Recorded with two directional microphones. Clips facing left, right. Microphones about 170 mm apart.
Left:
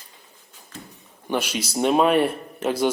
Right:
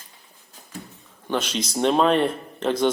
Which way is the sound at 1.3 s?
10° left (ahead or behind).